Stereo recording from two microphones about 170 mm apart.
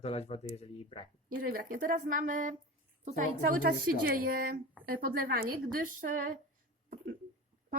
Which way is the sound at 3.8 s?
60° right (ahead or behind).